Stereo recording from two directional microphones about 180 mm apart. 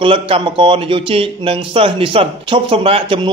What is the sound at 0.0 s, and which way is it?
Speech, 30° right (ahead or behind).